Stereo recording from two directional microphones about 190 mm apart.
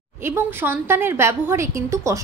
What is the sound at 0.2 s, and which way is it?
A woman's voice, 10° right (ahead or behind).